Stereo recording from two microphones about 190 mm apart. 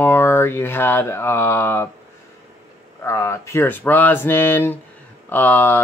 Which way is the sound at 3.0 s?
15° left (ahead or behind).